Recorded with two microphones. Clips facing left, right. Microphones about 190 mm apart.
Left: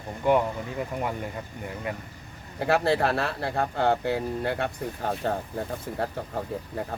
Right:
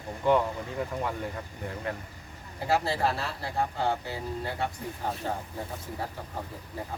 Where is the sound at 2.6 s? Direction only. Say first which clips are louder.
Left 5 dB; 60° left (ahead or behind).